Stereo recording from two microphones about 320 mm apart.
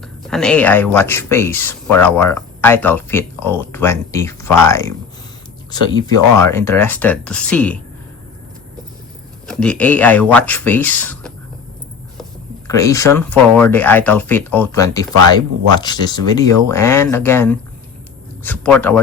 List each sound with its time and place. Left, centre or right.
0.3 s speech: centre
9.5 s speech: centre
12.6 s speech: centre